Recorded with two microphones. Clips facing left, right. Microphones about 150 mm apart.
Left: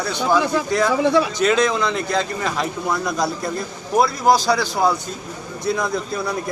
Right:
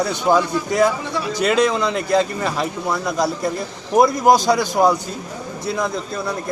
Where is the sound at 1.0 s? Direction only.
90° left.